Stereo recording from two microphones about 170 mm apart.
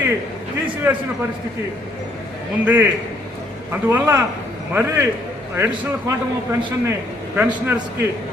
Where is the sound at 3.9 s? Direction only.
15° right (ahead or behind).